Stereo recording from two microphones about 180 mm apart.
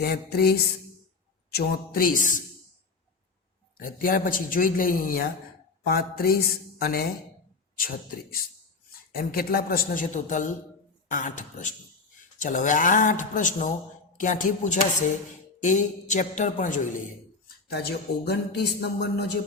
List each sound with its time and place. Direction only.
0.0 s speech: 60° left (ahead or behind)
3.8 s speech: 50° left (ahead or behind)
17.7 s speech: 60° left (ahead or behind)